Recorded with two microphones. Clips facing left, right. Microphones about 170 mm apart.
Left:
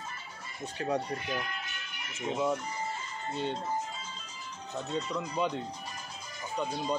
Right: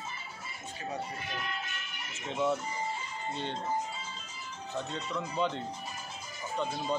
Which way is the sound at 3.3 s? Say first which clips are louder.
Left 4 dB; 10° left (ahead or behind).